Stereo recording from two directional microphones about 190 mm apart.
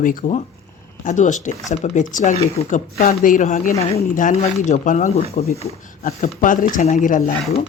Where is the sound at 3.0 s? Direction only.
45° left (ahead or behind).